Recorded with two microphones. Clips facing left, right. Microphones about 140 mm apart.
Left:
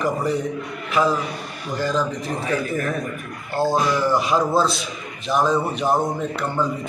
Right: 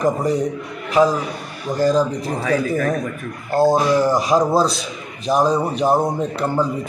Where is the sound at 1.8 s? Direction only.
40° right (ahead or behind).